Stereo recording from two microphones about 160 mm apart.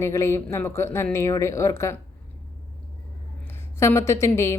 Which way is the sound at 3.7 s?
15° left (ahead or behind).